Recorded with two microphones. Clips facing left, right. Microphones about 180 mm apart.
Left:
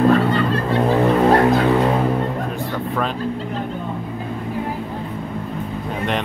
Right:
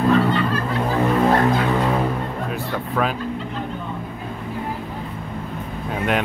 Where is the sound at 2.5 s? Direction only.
5° right (ahead or behind).